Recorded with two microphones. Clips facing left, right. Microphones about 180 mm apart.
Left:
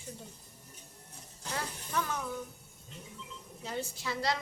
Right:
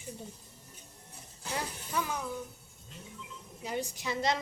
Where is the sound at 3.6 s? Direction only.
15° right (ahead or behind).